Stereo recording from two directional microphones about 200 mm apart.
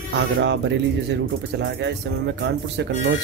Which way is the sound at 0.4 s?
60° right (ahead or behind).